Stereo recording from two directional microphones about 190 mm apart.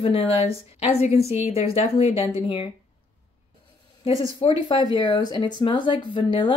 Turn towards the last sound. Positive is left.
turn(degrees=25)  # may be behind; listen again after turning